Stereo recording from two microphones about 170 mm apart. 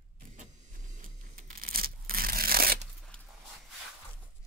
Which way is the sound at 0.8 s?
50° right (ahead or behind).